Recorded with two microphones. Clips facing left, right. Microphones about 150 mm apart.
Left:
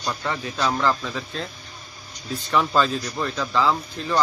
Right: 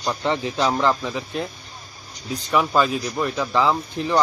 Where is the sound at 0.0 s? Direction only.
20° right (ahead or behind).